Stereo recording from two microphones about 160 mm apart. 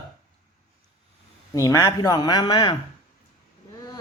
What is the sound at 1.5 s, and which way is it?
Speech, 20° left (ahead or behind).